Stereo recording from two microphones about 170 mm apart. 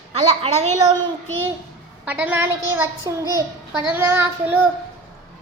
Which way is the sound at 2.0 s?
10° right (ahead or behind).